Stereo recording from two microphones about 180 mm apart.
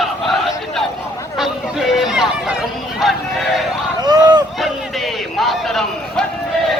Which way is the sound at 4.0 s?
25° right (ahead or behind).